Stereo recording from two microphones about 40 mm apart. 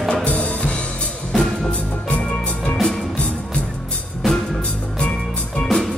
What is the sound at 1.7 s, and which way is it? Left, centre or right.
Music, left.